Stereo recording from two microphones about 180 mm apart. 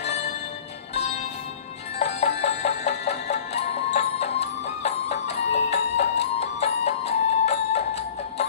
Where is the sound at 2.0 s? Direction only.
40° left (ahead or behind).